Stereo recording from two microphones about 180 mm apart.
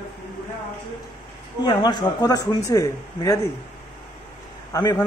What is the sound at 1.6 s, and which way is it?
Speech, 25° left (ahead or behind).